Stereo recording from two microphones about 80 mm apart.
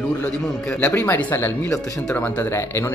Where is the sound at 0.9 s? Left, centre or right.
Left.